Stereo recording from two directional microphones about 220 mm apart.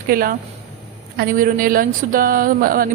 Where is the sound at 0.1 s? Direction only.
40° right (ahead or behind).